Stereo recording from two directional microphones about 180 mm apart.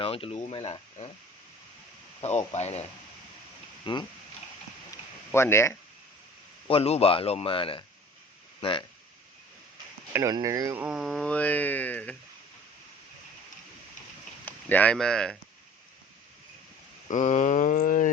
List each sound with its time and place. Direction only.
0.0 s speech: 30° left (ahead or behind)
2.2 s speech: 35° left (ahead or behind)
3.9 s speech: 30° left (ahead or behind)
5.3 s speech: 15° left (ahead or behind)
6.7 s speech: 35° left (ahead or behind)
10.1 s speech: 15° right (ahead or behind)
10.8 s speech: centre (ahead or behind)
14.4 s speech: 10° left (ahead or behind)
17.1 s a sound: 45° left (ahead or behind)